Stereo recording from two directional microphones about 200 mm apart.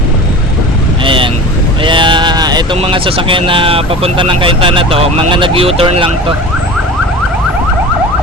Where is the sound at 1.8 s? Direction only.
25° right (ahead or behind).